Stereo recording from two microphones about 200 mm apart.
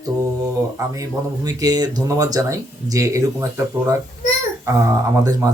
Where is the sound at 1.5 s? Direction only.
20° right (ahead or behind).